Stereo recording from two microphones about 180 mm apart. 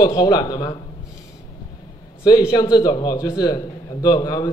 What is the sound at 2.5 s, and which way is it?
A man's voice, 20° left (ahead or behind).